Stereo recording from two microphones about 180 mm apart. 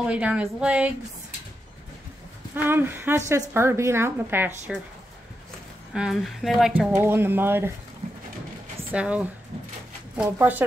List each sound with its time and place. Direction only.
0.0 s a woman's voice: 5° right (ahead or behind)
2.5 s a woman's voice: 10° right (ahead or behind)
5.9 s a woman's voice: centre (ahead or behind)
8.9 s a woman's voice: 5° right (ahead or behind)